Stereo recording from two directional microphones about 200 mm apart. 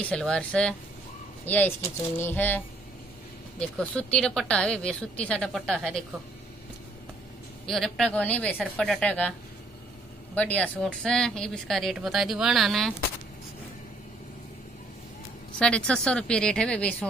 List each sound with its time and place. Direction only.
0.0 s speech: 5° left (ahead or behind)
2.1 s a sound: 10° left (ahead or behind)
3.5 s speech: 5° left (ahead or behind)
7.6 s speech: centre (ahead or behind)
10.3 s speech: 5° left (ahead or behind)
15.6 s speech: 5° left (ahead or behind)